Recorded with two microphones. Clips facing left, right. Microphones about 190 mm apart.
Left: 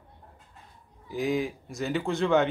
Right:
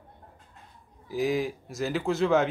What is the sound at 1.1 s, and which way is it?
Speech, centre (ahead or behind).